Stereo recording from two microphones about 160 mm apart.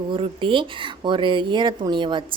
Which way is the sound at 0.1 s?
30° right (ahead or behind).